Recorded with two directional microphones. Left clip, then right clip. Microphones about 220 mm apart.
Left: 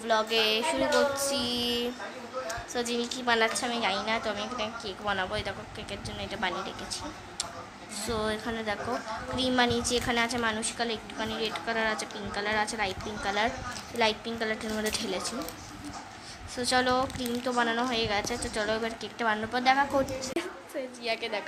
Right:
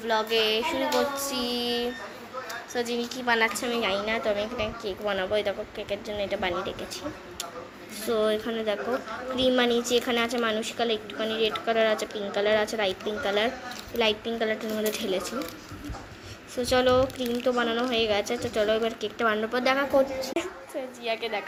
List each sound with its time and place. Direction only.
0.1 s a woman's voice: centre (ahead or behind)
8.0 s a woman's voice: 5° right (ahead or behind)
16.6 s a woman's voice: 5° right (ahead or behind)